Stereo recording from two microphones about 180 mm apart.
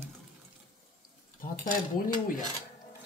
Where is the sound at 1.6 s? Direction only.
50° left (ahead or behind).